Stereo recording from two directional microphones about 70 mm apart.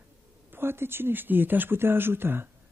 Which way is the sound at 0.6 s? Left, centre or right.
Right.